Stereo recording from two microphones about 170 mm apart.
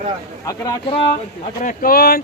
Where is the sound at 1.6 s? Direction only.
55° left (ahead or behind).